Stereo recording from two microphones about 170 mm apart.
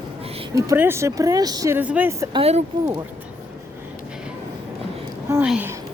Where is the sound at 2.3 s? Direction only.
35° right (ahead or behind).